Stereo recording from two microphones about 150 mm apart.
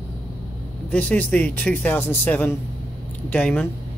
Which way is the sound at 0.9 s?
10° left (ahead or behind).